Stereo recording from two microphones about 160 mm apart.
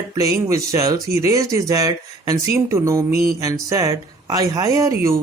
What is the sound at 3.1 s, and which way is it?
Mantra, 70° right (ahead or behind).